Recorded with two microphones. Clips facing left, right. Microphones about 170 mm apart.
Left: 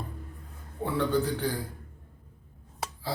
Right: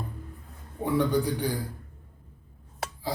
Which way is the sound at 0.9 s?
15° right (ahead or behind).